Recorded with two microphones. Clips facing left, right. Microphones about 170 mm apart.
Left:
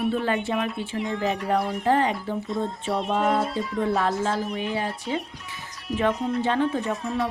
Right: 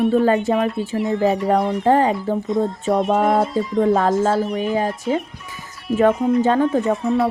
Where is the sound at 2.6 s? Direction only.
45° right (ahead or behind).